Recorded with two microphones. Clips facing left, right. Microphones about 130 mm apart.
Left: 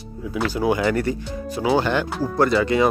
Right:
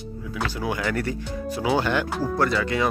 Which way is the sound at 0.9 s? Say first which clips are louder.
Left 5 dB; 10° left (ahead or behind).